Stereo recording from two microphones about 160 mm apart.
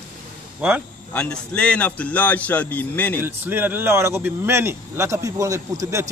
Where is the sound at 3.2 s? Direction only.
15° right (ahead or behind).